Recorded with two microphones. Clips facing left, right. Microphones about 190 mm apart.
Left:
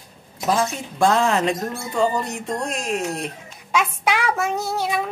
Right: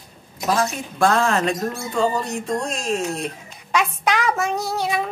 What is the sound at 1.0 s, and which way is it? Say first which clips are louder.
Speech: even; 20° left (ahead or behind).